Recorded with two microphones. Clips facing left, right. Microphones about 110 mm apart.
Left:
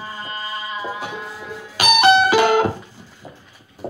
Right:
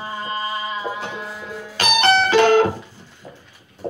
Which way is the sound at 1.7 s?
10° left (ahead or behind).